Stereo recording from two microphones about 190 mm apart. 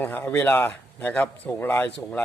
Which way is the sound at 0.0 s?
10° left (ahead or behind).